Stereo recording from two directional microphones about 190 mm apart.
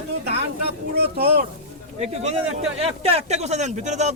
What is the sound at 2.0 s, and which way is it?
Speech, 35° right (ahead or behind).